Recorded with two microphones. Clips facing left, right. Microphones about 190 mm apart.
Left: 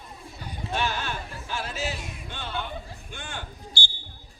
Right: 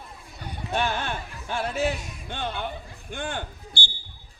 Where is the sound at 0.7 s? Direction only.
55° right (ahead or behind).